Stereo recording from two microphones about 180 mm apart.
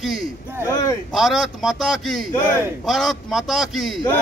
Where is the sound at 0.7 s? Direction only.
20° left (ahead or behind).